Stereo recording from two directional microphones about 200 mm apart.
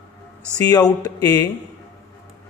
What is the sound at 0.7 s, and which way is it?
Speech, 20° left (ahead or behind).